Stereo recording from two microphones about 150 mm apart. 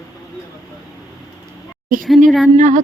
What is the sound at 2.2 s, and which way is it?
Speech, centre (ahead or behind).